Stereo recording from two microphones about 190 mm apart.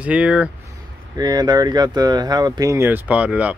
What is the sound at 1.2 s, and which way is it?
Speech, 20° right (ahead or behind).